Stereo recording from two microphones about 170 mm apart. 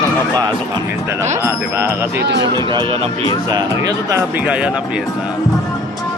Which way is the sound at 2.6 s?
30° right (ahead or behind).